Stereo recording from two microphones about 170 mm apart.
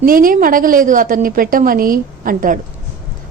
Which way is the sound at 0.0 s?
55° right (ahead or behind).